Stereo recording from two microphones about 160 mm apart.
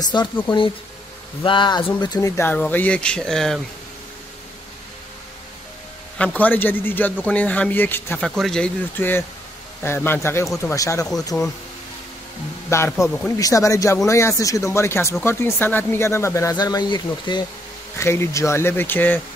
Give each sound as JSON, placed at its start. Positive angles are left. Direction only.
{"t": 0.0, "sound": "speech", "side_deg": 25}
{"t": 1.4, "sound": "speech", "side_deg": 30}
{"t": 6.1, "sound": "speech", "side_deg": 10}
{"t": 12.6, "sound": "a man's voice", "side_deg": 15}
{"t": 12.9, "sound": "speech", "side_deg": 0}
{"t": 13.4, "sound": "speech", "side_deg": 20}
{"t": 17.9, "sound": "speech", "side_deg": 15}